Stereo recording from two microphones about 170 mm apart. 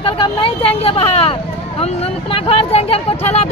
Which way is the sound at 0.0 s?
30° left (ahead or behind).